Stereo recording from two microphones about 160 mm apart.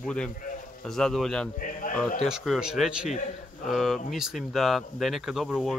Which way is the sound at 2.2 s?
Centre (ahead or behind).